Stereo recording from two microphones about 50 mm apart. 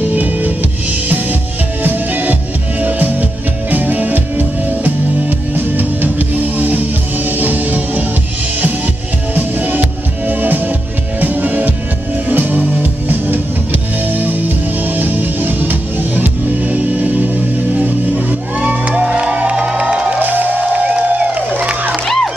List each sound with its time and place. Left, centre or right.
0.1 s music: right
5.8 s music: right
9.3 s music: right
20.2 s music: right
22.0 s music: centre